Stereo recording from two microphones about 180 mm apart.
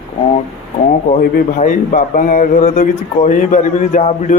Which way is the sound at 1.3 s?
45° left (ahead or behind).